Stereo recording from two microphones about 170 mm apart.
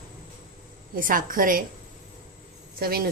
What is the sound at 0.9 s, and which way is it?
Speech, 55° right (ahead or behind).